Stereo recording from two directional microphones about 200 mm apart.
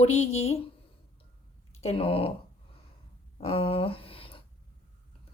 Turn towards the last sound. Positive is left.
turn(degrees=25)  # may be behind; listen again after turning